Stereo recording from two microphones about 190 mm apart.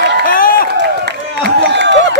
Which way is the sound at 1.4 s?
65° right (ahead or behind).